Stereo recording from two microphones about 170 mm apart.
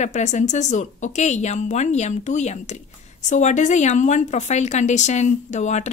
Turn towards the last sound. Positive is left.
turn(degrees=45)  # may be behind; listen again after turning